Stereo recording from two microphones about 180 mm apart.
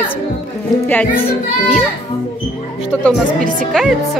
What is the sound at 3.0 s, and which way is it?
Speech, 5° left (ahead or behind).